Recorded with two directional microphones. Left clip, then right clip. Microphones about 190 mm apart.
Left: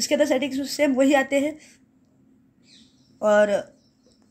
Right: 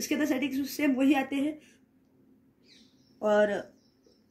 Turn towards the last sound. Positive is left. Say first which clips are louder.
# left 7 dB
turn(degrees=35)  # may be behind; listen again after turning